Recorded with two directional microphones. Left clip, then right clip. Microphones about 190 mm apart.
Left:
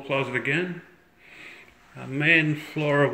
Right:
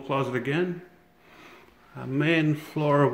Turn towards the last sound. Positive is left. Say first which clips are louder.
# even
turn(degrees=-30)  # may be behind; listen again after turning